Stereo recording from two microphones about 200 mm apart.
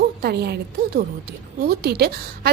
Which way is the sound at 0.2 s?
55° right (ahead or behind).